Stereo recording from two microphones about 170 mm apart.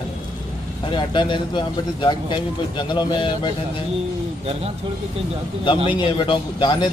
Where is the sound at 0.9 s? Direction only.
30° left (ahead or behind).